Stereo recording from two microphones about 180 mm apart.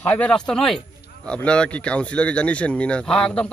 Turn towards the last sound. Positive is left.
turn(degrees=5)  # may be behind; listen again after turning